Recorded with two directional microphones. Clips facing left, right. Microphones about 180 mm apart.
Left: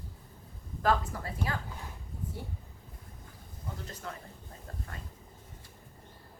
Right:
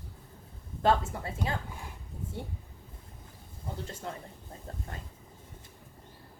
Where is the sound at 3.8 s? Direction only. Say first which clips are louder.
Right 2 dB; 25° right (ahead or behind).